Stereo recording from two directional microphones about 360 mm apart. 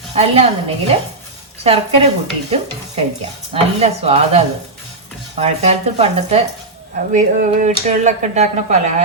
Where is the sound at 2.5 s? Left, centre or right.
Centre.